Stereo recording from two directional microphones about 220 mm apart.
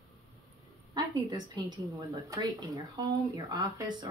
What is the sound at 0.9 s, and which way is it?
A woman's voice, 20° right (ahead or behind).